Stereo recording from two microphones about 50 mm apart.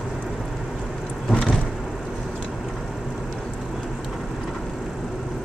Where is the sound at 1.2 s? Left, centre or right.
Centre.